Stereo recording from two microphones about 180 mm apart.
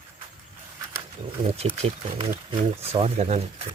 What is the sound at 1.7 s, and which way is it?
Speech, 35° right (ahead or behind).